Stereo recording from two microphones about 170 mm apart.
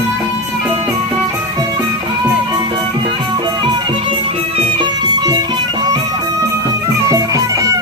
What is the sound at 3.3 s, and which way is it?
Music, 30° right (ahead or behind).